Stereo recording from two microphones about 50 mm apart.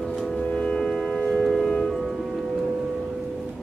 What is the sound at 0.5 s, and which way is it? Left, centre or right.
Music, centre.